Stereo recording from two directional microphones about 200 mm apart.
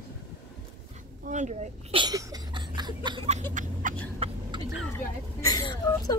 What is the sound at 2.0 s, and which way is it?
Cough, 20° right (ahead or behind).